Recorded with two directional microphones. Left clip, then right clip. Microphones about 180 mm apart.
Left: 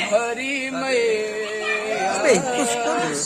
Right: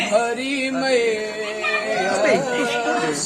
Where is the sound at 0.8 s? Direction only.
15° left (ahead or behind).